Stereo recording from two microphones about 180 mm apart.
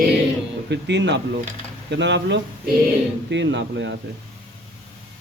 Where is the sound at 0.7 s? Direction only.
75° right (ahead or behind).